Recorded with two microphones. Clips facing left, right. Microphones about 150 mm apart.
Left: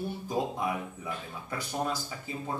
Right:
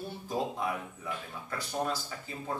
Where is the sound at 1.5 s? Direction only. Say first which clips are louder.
Left 1 dB; 15° left (ahead or behind).